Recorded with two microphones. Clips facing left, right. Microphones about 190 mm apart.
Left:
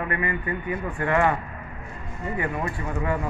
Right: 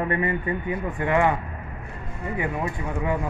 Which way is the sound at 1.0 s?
15° right (ahead or behind).